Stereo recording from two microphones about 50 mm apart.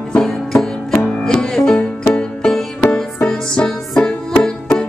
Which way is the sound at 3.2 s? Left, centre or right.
Centre.